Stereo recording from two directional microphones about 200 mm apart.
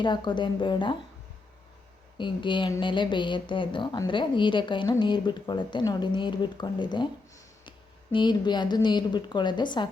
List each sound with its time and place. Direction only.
0.0 s speech: 25° left (ahead or behind)
2.1 s speech: 25° left (ahead or behind)
8.1 s speech: 20° left (ahead or behind)